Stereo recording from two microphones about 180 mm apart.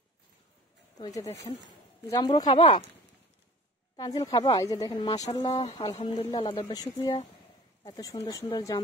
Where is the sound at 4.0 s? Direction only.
20° left (ahead or behind).